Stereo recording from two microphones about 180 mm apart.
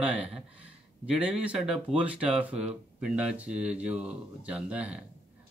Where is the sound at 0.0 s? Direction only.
5° right (ahead or behind).